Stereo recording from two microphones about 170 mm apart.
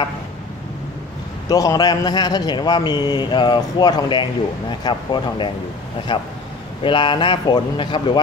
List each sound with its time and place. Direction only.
1.5 s speech: 20° left (ahead or behind)